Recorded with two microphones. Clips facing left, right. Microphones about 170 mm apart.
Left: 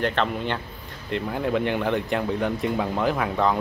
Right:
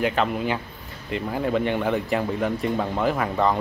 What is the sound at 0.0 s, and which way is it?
Speech, 5° right (ahead or behind).